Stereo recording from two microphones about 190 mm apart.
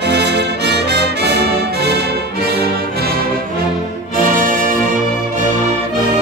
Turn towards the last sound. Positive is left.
turn(degrees=-45)  # may be behind; listen again after turning